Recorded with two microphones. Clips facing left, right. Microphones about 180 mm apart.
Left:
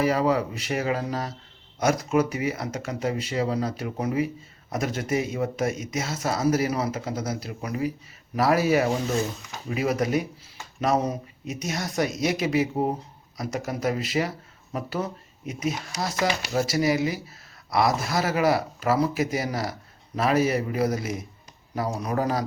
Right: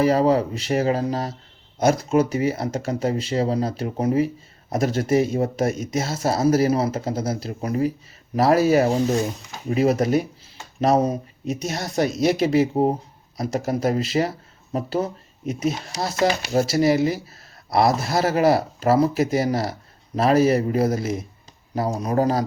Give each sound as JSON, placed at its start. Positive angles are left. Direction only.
{"t": 0.0, "sound": "speech", "side_deg": -35}
{"t": 22.1, "sound": "speech", "side_deg": -35}